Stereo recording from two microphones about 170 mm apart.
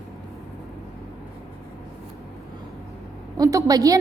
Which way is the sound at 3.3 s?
20° right (ahead or behind).